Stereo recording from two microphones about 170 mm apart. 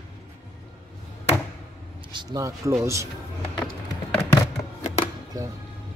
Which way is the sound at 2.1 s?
20° right (ahead or behind).